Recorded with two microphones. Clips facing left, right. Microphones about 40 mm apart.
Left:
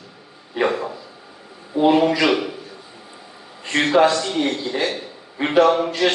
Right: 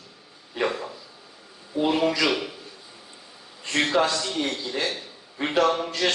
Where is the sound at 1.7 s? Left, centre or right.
Left.